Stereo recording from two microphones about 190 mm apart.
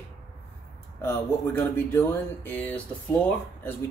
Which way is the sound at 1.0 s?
10° left (ahead or behind).